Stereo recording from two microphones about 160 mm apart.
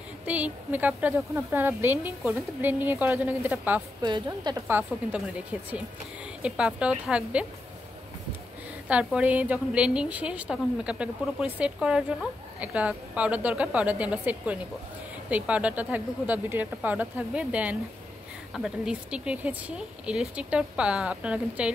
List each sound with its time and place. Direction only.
0.3 s a woman's voice: 10° right (ahead or behind)
4.0 s a woman's voice: 25° right (ahead or behind)
4.6 s a woman's voice: 15° right (ahead or behind)
8.8 s a woman's voice: 10° right (ahead or behind)